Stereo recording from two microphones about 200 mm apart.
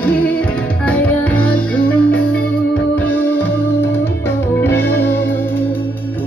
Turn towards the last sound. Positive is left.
turn(degrees=10)  # may be behind; listen again after turning